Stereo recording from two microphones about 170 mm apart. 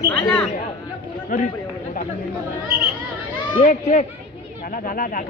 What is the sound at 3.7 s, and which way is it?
A man's voice, 45° left (ahead or behind).